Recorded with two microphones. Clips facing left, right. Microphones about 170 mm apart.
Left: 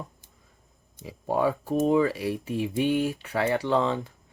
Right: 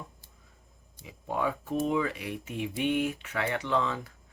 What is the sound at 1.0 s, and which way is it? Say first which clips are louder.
Speech: left 6 dB; 35° left (ahead or behind).